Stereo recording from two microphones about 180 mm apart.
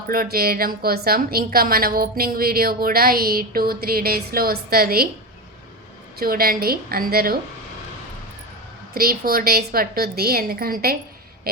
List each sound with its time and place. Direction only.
0.1 s a woman's voice: 55° right (ahead or behind)
6.1 s a woman's voice: 55° right (ahead or behind)
9.0 s a woman's voice: 55° right (ahead or behind)